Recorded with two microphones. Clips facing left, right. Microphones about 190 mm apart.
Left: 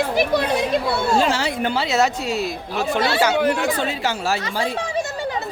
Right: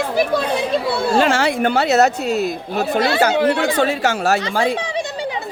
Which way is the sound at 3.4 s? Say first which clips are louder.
Right 4 dB; 75° right (ahead or behind).